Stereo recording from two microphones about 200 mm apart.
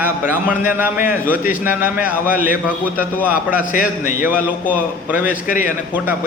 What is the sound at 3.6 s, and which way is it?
Speech, 40° left (ahead or behind).